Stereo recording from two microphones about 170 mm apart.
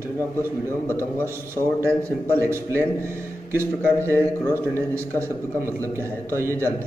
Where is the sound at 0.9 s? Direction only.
15° left (ahead or behind).